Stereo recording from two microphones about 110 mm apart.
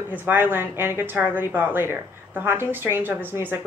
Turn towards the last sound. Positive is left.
turn(degrees=-20)  # may be behind; listen again after turning